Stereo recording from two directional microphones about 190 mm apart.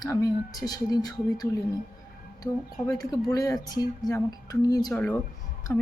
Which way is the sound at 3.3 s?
20° left (ahead or behind).